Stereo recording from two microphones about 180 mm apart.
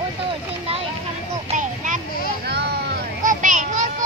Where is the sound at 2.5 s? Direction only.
65° right (ahead or behind).